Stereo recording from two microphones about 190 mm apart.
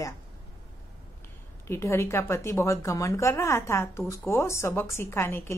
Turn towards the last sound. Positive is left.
turn(degrees=15)  # may be behind; listen again after turning